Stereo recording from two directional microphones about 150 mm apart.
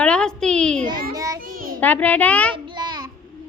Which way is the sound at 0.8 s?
25° right (ahead or behind).